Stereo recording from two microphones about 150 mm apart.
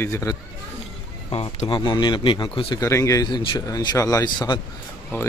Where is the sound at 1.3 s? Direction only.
40° left (ahead or behind).